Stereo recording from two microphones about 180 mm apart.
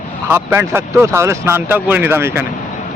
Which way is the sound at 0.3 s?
15° right (ahead or behind).